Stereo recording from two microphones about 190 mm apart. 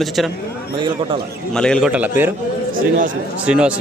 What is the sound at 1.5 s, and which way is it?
Speech, 5° left (ahead or behind).